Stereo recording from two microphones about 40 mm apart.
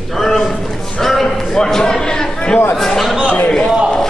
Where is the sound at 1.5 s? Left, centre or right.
Centre.